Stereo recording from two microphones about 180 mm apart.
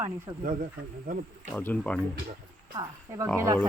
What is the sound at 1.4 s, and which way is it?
Speech, 10° left (ahead or behind).